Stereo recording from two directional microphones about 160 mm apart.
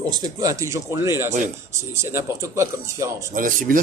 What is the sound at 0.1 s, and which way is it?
Speech, 25° right (ahead or behind).